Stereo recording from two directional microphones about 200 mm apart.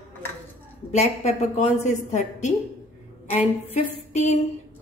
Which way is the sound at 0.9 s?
35° left (ahead or behind).